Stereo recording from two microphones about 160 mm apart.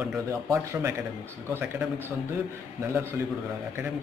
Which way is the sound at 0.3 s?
20° right (ahead or behind).